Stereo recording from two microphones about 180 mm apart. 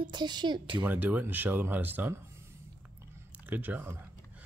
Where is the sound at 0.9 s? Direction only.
10° right (ahead or behind).